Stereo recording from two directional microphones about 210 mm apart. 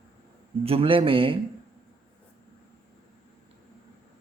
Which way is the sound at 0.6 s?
25° right (ahead or behind).